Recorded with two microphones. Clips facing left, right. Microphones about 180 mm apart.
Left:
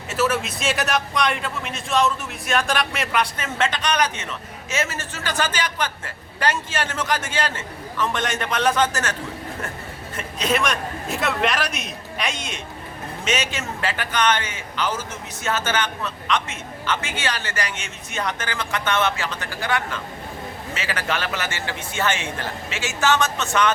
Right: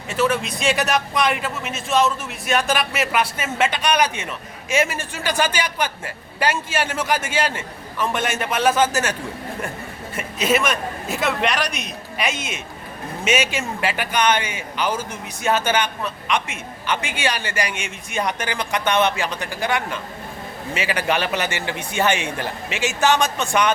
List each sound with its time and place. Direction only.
0.1 s a man's voice: 5° left (ahead or behind)
10.2 s a man's voice: 5° right (ahead or behind)